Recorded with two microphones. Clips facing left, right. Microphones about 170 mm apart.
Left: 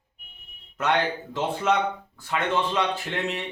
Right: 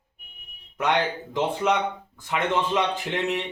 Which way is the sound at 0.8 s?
15° right (ahead or behind).